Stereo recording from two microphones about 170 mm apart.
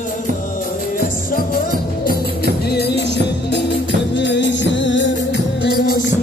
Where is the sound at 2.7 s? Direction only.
85° left.